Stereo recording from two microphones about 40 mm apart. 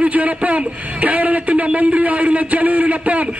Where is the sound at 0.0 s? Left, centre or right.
Right.